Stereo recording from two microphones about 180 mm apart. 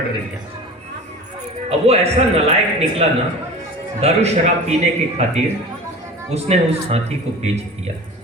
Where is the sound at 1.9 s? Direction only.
35° right (ahead or behind).